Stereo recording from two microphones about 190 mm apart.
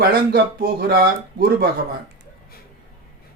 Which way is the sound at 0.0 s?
55° right (ahead or behind).